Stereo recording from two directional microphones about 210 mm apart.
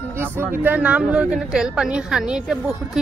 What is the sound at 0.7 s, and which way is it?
Speech, 5° right (ahead or behind).